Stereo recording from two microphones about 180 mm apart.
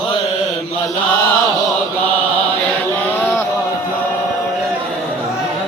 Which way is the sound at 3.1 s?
10° left (ahead or behind).